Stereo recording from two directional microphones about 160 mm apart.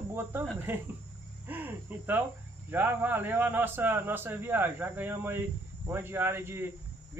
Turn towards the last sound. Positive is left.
turn(degrees=-15)  # may be behind; listen again after turning